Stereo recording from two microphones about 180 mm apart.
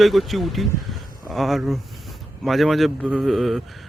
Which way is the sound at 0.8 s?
Centre (ahead or behind).